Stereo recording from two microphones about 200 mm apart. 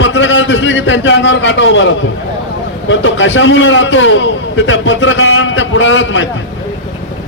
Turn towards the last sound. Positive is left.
turn(degrees=70)  # may be behind; listen again after turning